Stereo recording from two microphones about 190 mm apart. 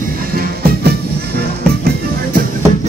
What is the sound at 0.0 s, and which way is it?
Music, 50° right (ahead or behind).